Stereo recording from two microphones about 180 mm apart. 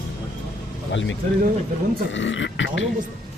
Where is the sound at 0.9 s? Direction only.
90° left.